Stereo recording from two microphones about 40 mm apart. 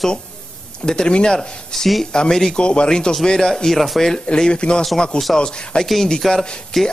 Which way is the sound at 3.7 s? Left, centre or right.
Centre.